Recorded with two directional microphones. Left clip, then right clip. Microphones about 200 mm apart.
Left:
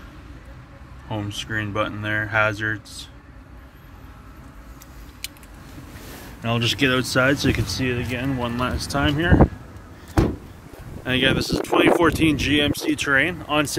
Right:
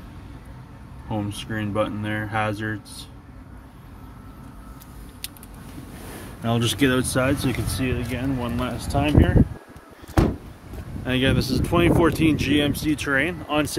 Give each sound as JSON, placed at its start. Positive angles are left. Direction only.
{"t": 1.1, "sound": "speech", "side_deg": -10}
{"t": 6.4, "sound": "speech", "side_deg": -20}
{"t": 7.2, "sound": "speech", "side_deg": 0}
{"t": 11.1, "sound": "speech", "side_deg": -5}